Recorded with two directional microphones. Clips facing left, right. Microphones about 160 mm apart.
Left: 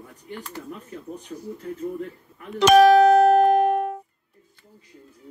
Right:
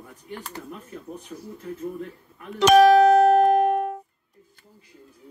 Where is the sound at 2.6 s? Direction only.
75° left (ahead or behind).